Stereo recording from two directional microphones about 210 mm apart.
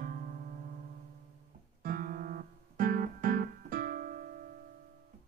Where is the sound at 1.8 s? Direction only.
40° right (ahead or behind).